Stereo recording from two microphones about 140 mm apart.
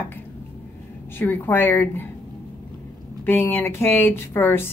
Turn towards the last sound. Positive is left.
turn(degrees=15)  # may be behind; listen again after turning